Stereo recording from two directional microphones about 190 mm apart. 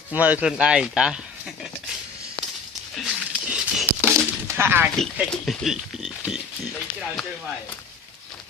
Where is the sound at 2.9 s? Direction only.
5° right (ahead or behind).